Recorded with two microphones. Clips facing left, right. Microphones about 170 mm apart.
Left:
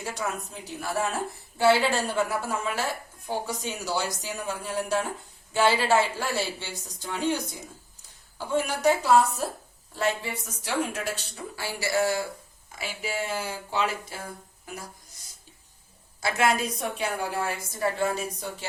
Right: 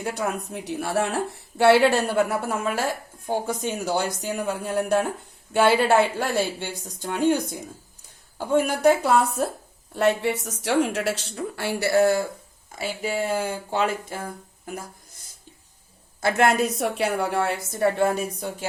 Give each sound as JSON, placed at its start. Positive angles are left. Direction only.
{"t": 0.0, "sound": "a woman's voice", "side_deg": -60}
{"t": 0.5, "sound": "a woman's voice", "side_deg": -70}
{"t": 12.8, "sound": "speech", "side_deg": -40}
{"t": 16.2, "sound": "a woman's voice", "side_deg": -60}